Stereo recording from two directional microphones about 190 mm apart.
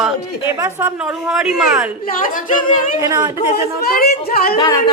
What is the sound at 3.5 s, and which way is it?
Speech, 55° left (ahead or behind).